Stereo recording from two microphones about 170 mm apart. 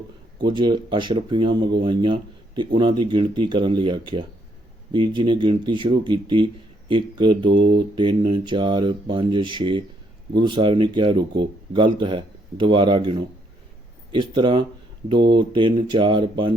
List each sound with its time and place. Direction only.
0.4 s speech: 25° right (ahead or behind)